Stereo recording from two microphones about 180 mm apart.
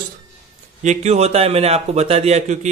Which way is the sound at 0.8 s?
40° right (ahead or behind).